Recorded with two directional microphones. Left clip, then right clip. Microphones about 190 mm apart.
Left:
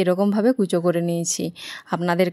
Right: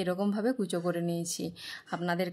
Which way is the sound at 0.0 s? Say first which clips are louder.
Left 12 dB; 35° left (ahead or behind).